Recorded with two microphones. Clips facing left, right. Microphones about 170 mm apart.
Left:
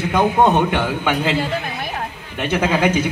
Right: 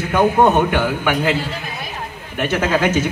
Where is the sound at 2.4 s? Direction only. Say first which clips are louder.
Even; 15° left (ahead or behind).